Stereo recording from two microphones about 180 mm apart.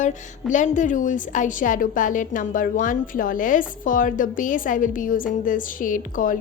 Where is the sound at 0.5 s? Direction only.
45° left (ahead or behind).